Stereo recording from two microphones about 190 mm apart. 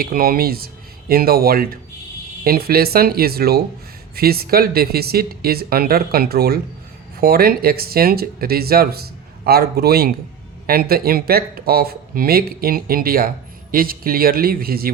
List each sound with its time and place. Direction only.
0.0 s speech: 50° right (ahead or behind)